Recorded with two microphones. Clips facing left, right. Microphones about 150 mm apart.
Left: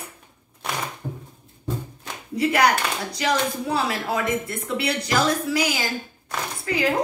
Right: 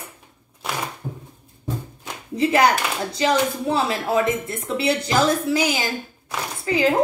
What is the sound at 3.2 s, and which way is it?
Speech, 25° right (ahead or behind).